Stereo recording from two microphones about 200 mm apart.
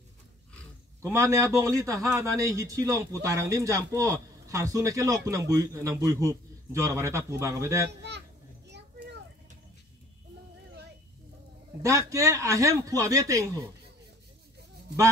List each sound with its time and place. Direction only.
1.0 s speech: 15° right (ahead or behind)
8.6 s children playing: 60° right (ahead or behind)
11.8 s speech: 15° right (ahead or behind)